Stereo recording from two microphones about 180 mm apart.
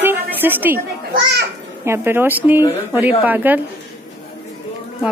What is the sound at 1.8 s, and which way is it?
Speech, 15° right (ahead or behind).